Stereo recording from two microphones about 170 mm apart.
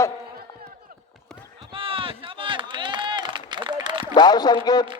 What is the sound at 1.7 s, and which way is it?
Run, 30° right (ahead or behind).